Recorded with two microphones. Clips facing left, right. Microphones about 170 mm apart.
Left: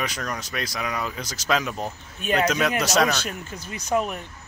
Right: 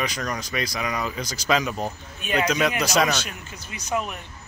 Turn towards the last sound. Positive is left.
turn(degrees=45)  # may be behind; listen again after turning